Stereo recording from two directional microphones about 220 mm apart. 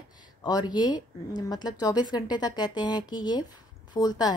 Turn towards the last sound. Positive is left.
turn(degrees=15)  # may be behind; listen again after turning